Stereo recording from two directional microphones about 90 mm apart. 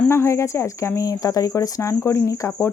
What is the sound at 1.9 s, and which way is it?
Speech, 30° left (ahead or behind).